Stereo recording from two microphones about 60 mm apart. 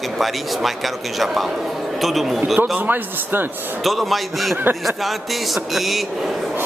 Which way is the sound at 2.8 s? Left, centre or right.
Right.